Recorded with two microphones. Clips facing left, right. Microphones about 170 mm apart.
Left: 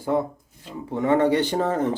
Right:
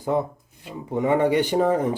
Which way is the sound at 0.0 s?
20° right (ahead or behind).